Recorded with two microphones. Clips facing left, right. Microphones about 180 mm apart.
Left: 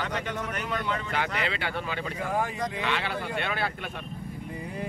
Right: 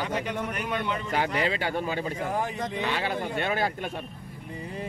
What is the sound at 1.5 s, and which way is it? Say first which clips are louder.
Speech: right 4 dB; 40° right (ahead or behind).